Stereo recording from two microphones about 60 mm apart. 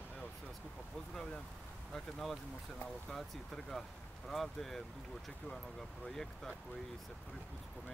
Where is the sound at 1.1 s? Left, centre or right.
Centre.